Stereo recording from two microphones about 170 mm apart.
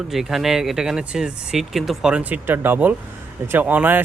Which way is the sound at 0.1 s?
Centre (ahead or behind).